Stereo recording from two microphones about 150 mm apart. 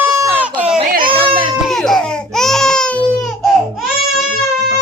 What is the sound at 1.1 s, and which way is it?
Baby cry, 35° right (ahead or behind).